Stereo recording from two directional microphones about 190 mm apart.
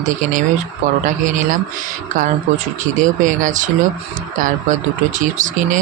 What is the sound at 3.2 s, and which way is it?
Speech, 45° right (ahead or behind).